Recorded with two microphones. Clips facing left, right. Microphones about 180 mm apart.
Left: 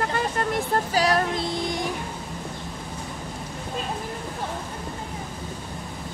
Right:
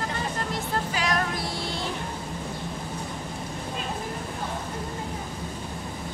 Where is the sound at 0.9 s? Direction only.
35° left (ahead or behind).